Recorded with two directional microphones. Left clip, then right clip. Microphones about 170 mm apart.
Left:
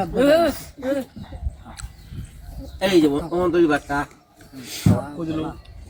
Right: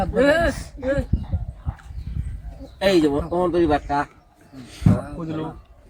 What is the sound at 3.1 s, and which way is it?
Speech, 15° right (ahead or behind).